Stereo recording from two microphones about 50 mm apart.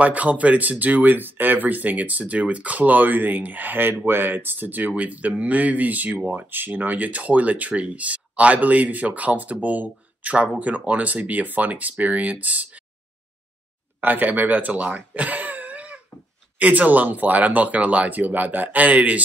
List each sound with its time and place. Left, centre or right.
0.0 s speech: right
14.0 s speech: right